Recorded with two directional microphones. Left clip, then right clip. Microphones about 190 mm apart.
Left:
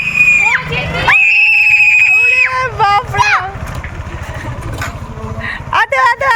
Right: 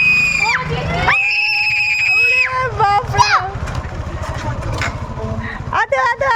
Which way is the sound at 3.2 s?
60° right (ahead or behind).